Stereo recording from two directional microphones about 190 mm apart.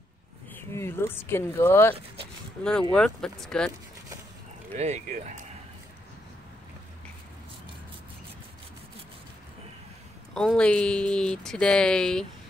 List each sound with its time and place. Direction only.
0.6 s speech: 15° left (ahead or behind)
4.7 s speech: 40° right (ahead or behind)
10.3 s speech: 5° left (ahead or behind)